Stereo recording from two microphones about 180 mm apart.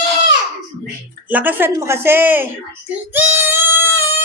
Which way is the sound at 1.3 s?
10° right (ahead or behind).